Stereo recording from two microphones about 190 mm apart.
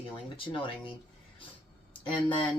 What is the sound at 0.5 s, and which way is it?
Speech, 25° left (ahead or behind).